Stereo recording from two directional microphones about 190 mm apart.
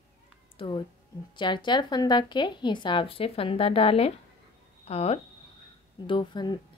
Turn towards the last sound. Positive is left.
turn(degrees=25)  # may be behind; listen again after turning